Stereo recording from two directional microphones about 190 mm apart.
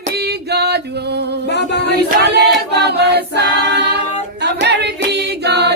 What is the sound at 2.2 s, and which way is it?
Choir, 60° right (ahead or behind).